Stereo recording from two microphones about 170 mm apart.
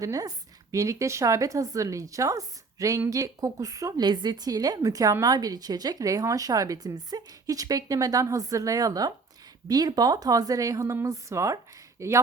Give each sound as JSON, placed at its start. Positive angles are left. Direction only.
{"t": 0.0, "sound": "speech", "side_deg": -20}